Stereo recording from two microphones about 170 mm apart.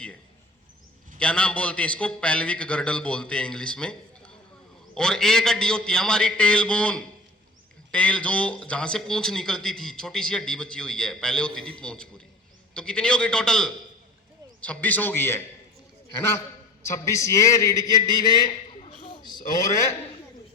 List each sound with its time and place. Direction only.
1.2 s a man's voice: 5° left (ahead or behind)
16.8 s a man's voice: 15° left (ahead or behind)